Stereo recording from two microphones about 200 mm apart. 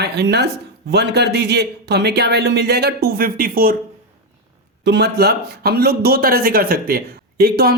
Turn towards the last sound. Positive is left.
turn(degrees=-50)  # may be behind; listen again after turning